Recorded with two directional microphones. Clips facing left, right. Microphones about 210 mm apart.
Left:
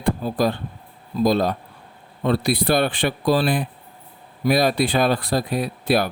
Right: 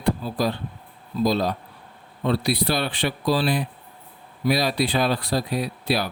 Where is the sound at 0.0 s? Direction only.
50° left (ahead or behind).